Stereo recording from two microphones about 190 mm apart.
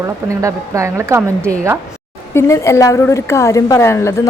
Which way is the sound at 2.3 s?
15° left (ahead or behind).